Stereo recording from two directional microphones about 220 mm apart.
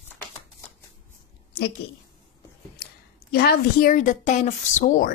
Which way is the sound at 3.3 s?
45° left (ahead or behind).